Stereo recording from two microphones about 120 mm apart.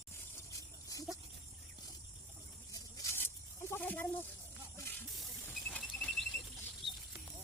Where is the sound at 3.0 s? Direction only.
20° left (ahead or behind).